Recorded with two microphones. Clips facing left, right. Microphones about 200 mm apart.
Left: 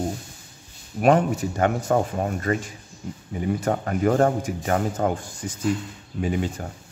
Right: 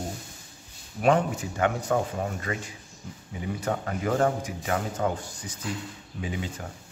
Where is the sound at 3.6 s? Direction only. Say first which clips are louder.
Left 3 dB; 45° left (ahead or behind).